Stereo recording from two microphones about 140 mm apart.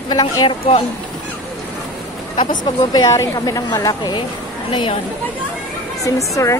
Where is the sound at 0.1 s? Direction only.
30° left (ahead or behind).